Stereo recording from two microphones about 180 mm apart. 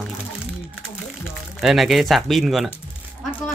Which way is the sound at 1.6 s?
Centre (ahead or behind).